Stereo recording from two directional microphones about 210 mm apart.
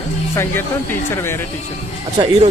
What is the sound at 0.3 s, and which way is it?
Speech, 10° left (ahead or behind).